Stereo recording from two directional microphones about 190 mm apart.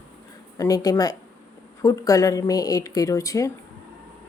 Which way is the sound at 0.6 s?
20° left (ahead or behind).